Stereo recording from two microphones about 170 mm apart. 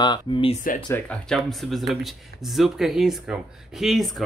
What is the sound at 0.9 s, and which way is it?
Speech, 5° left (ahead or behind).